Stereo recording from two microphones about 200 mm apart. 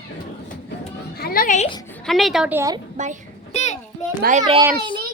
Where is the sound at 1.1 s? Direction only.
50° left (ahead or behind).